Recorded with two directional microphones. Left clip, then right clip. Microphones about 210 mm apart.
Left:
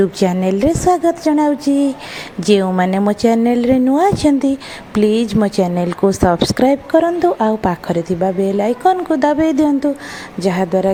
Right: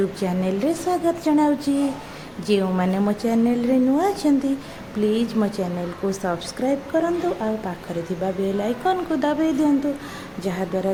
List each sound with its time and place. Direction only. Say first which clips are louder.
0.2 s a woman's voice: left 9 dB; 35° left (ahead or behind)